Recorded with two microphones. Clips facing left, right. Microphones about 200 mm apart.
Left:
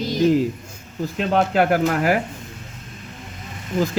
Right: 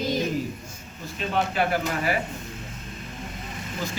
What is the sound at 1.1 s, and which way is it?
Speech, 80° left.